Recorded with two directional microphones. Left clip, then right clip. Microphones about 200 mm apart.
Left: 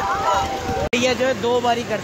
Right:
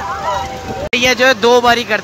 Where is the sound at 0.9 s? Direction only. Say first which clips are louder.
Right 8 dB; 5° right (ahead or behind).